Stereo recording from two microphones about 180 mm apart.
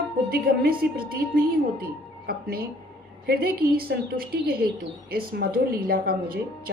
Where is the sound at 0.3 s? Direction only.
55° right (ahead or behind).